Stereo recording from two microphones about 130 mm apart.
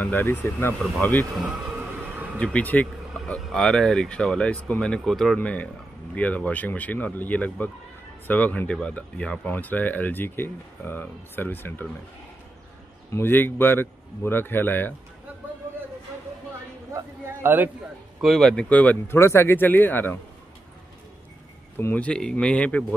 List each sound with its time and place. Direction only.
0.0 s speech: 15° left (ahead or behind)
1.3 s music: 5° right (ahead or behind)
2.3 s speech: 10° left (ahead or behind)
13.1 s speech: 15° left (ahead or behind)
16.9 s a sound: 15° right (ahead or behind)
18.2 s speech: centre (ahead or behind)
21.7 s speech: 15° left (ahead or behind)